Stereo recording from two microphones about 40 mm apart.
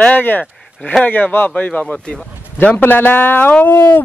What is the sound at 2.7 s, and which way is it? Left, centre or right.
Speech, left.